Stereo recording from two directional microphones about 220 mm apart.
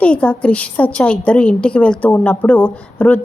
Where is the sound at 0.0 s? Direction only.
5° left (ahead or behind).